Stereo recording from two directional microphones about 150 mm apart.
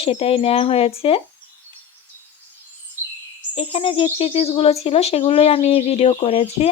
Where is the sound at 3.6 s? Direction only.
40° left (ahead or behind).